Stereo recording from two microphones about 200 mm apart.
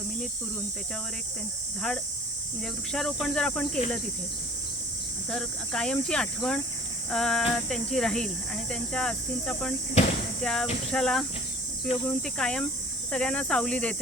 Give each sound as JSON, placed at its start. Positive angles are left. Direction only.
{"t": 2.9, "sound": "speech", "side_deg": 0}
{"t": 5.3, "sound": "speech", "side_deg": 5}
{"t": 10.0, "sound": "speech", "side_deg": 35}
{"t": 10.4, "sound": "speech", "side_deg": 5}